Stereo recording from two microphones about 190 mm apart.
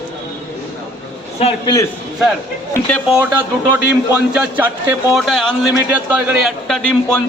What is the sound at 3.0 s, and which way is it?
A man's voice, 5° right (ahead or behind).